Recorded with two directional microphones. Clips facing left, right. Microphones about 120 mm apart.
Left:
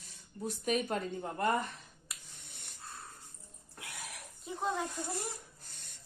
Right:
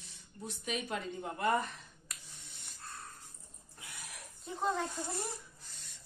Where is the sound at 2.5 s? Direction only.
55° left (ahead or behind).